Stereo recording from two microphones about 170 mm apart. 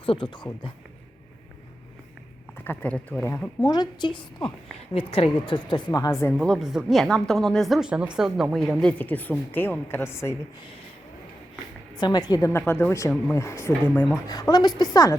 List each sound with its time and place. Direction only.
0.0 s speech: 30° left (ahead or behind)
2.6 s a woman's voice: 10° left (ahead or behind)
3.7 s a woman's voice: 25° left (ahead or behind)
6.3 s speech: centre (ahead or behind)
11.9 s a woman's voice: 25° left (ahead or behind); by 14.1 s 10° left (ahead or behind)
14.3 s a woman's voice: 20° left (ahead or behind)